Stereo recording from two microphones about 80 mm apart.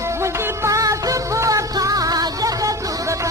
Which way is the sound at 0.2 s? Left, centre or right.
Right.